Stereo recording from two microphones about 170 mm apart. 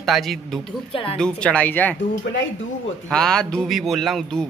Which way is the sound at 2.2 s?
90° left.